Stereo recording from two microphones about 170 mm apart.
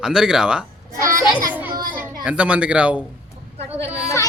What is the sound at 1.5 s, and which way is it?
Children playing, 10° right (ahead or behind).